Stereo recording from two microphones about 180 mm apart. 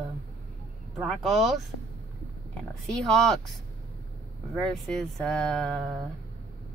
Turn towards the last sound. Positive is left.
turn(degrees=5)  # may be behind; listen again after turning